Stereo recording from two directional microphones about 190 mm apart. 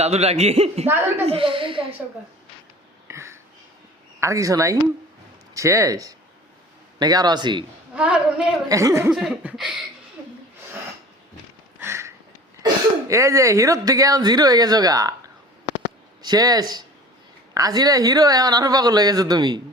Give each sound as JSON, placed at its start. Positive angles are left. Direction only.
{"t": 0.0, "sound": "a man's voice", "side_deg": -35}
{"t": 3.1, "sound": "a sound", "side_deg": -15}
{"t": 4.2, "sound": "speech", "side_deg": -15}
{"t": 7.9, "sound": "laughter", "side_deg": -5}
{"t": 8.7, "sound": "speech", "side_deg": -15}
{"t": 9.1, "sound": "laughter", "side_deg": -5}
{"t": 11.8, "sound": "a sound", "side_deg": -15}
{"t": 12.6, "sound": "speech", "side_deg": -15}
{"t": 16.2, "sound": "speech", "side_deg": -20}